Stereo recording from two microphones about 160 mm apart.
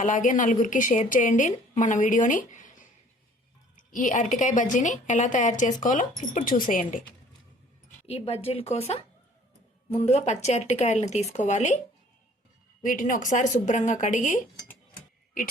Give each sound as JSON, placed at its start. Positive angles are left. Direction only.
{"t": 0.0, "sound": "a woman's voice", "side_deg": 50}
{"t": 8.0, "sound": "a woman's voice", "side_deg": 40}
{"t": 12.8, "sound": "a woman's voice", "side_deg": 55}